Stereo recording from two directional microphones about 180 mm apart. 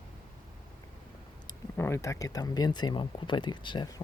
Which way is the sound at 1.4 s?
15° left (ahead or behind).